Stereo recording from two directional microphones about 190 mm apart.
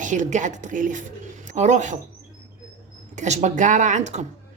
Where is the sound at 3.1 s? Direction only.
40° right (ahead or behind).